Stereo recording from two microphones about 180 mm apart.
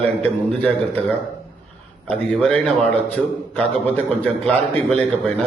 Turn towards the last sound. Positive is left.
turn(degrees=5)  # may be behind; listen again after turning